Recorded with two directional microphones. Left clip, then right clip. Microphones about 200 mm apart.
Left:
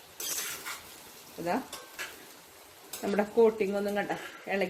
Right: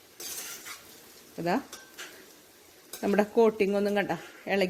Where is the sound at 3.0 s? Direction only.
50° right (ahead or behind).